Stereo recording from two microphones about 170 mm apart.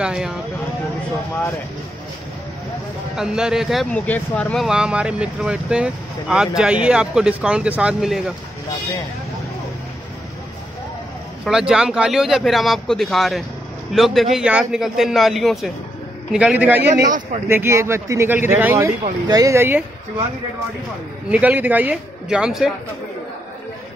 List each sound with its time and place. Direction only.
0.0 s speech: 5° right (ahead or behind)
3.2 s speech: 5° right (ahead or behind)
4.6 s speech: 5° right (ahead or behind)
11.4 s a man's voice: 5° right (ahead or behind)
21.3 s a man's voice: 10° right (ahead or behind)